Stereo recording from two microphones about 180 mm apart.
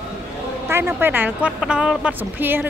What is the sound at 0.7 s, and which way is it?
A woman's voice, 15° right (ahead or behind).